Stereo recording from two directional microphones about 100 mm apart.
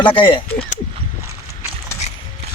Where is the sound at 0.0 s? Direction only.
60° left (ahead or behind).